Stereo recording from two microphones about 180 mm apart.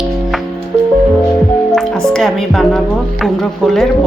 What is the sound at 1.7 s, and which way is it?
Music, 5° left (ahead or behind).